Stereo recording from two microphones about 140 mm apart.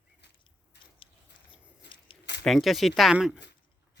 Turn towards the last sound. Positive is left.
turn(degrees=-5)  # may be behind; listen again after turning